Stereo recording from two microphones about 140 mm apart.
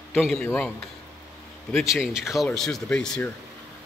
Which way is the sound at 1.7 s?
Centre (ahead or behind).